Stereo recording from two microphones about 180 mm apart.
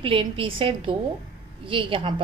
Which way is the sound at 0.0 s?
30° right (ahead or behind).